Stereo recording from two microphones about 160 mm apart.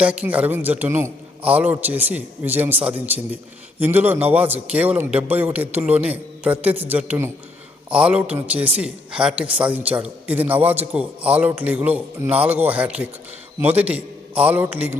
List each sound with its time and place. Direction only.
0.0 s a man's voice: 10° right (ahead or behind)